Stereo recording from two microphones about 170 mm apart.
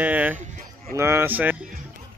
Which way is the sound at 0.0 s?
10° right (ahead or behind).